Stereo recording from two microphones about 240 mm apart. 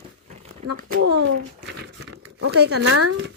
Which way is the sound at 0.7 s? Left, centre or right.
Right.